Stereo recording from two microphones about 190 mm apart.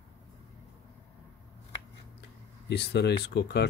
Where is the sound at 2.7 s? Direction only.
60° left (ahead or behind).